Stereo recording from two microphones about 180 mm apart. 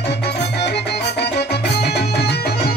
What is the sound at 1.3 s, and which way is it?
Music, 65° left (ahead or behind).